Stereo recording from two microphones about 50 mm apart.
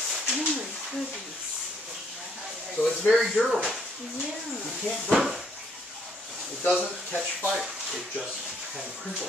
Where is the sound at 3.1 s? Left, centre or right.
Centre.